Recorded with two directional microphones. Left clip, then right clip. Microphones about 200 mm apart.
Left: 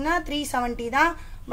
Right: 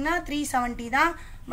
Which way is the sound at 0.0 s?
30° left (ahead or behind).